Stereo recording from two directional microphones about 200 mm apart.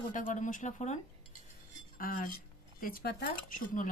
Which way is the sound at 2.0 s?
45° left (ahead or behind).